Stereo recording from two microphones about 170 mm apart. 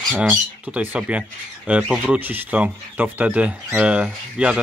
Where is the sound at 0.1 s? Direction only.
5° right (ahead or behind).